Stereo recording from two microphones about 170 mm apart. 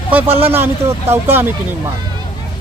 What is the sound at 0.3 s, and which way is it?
Speech, 35° right (ahead or behind).